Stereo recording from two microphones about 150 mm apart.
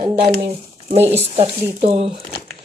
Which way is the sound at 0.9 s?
45° right (ahead or behind).